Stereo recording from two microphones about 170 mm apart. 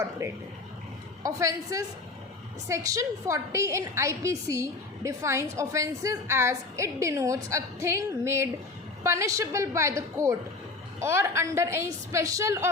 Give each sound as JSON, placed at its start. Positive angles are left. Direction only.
{"t": 0.2, "sound": "a woman's voice", "side_deg": -20}